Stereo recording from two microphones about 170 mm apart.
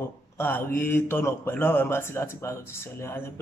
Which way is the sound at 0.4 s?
10° left (ahead or behind).